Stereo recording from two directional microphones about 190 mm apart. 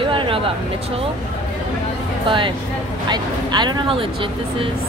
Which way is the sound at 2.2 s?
25° right (ahead or behind).